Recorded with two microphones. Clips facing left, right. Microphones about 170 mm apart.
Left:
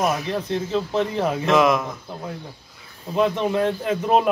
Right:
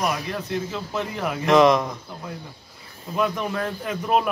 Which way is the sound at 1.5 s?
5° left (ahead or behind).